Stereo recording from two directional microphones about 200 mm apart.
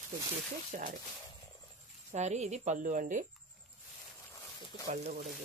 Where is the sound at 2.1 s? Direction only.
35° right (ahead or behind).